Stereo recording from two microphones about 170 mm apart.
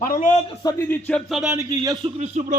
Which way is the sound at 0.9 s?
10° left (ahead or behind).